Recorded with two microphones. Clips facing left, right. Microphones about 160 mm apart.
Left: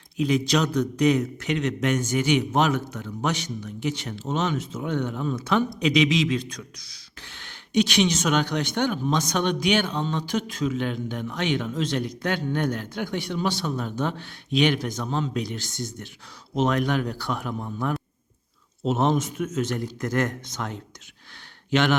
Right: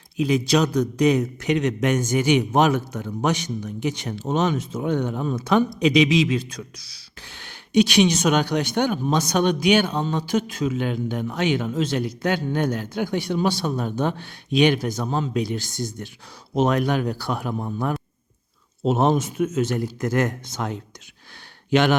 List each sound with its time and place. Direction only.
0.2 s speech: 10° right (ahead or behind)
17.6 s a man's voice: 35° right (ahead or behind)
18.8 s speech: 10° right (ahead or behind)